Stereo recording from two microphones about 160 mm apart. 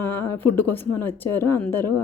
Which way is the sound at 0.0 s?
10° left (ahead or behind).